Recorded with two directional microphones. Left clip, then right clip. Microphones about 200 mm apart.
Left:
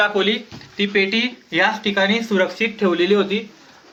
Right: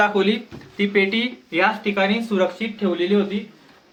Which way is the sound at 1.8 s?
35° left (ahead or behind).